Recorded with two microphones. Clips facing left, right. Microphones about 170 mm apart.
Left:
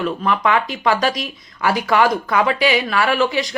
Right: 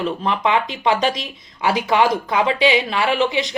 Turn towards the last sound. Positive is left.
turn(degrees=-20)  # may be behind; listen again after turning